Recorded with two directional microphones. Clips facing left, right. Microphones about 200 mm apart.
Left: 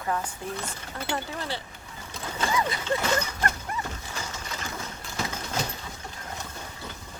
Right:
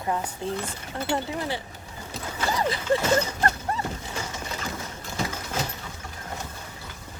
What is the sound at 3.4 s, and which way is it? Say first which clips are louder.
Dog: right 4 dB; 30° right (ahead or behind).